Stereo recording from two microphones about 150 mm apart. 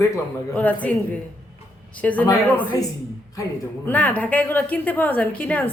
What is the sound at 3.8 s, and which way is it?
A woman's voice, 10° left (ahead or behind).